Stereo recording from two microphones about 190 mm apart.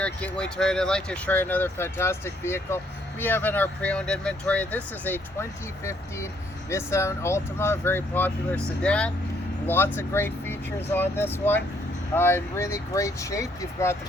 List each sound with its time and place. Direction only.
0.0 s speech: 5° left (ahead or behind)